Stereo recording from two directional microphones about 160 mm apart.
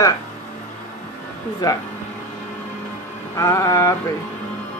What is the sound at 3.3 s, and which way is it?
Music, 20° left (ahead or behind).